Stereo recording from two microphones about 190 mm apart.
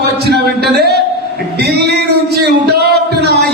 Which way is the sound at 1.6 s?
60° right (ahead or behind).